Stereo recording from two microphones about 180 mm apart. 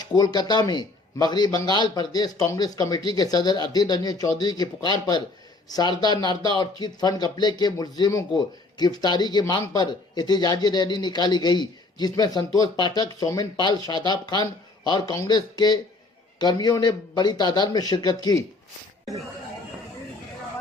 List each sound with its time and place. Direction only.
0.0 s a man's voice: 20° left (ahead or behind)